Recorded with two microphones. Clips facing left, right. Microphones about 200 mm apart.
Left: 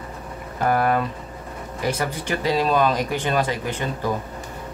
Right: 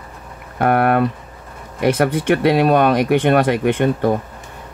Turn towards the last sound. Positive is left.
turn(degrees=-65)  # may be behind; listen again after turning